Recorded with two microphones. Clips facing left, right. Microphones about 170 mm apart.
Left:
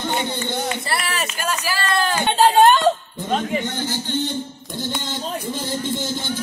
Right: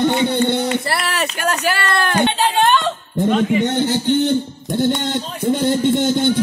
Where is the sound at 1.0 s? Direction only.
65° right (ahead or behind).